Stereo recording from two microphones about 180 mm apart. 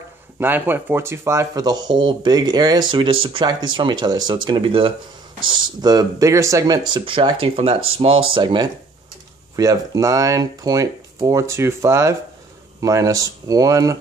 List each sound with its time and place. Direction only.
0.4 s speech: 10° right (ahead or behind)